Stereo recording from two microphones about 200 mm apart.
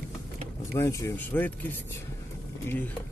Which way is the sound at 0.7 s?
15° left (ahead or behind).